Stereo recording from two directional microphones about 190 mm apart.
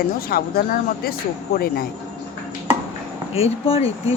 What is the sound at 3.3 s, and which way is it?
Speech, 30° left (ahead or behind).